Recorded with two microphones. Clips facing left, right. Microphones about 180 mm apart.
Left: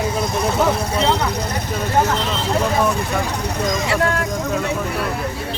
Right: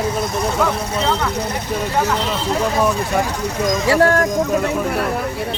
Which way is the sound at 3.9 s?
40° right (ahead or behind).